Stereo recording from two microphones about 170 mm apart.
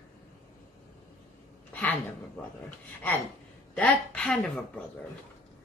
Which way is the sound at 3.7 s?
5° left (ahead or behind).